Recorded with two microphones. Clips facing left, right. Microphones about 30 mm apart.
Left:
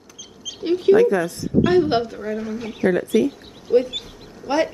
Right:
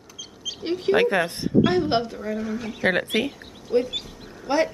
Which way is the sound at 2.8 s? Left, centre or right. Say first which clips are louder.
Left 4 dB; right.